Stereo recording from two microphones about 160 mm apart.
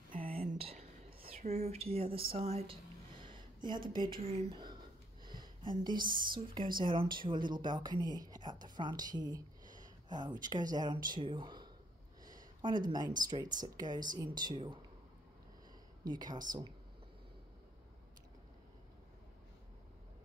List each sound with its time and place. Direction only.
0.6 s whispering: 35° right (ahead or behind)
3.9 s a woman's voice: 30° right (ahead or behind)
5.2 s a sound: 30° right (ahead or behind)
6.0 s a woman's voice: 30° right (ahead or behind)
16.1 s a woman's voice: 25° right (ahead or behind)